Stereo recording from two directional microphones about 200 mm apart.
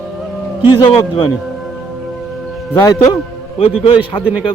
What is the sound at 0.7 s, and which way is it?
Speech, 20° left (ahead or behind).